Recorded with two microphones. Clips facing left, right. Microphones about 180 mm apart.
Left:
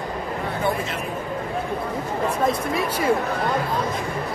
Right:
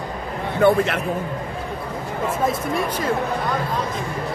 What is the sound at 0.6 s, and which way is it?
Speech, 65° right (ahead or behind).